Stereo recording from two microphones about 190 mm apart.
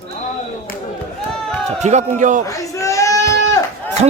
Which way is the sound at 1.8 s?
40° right (ahead or behind).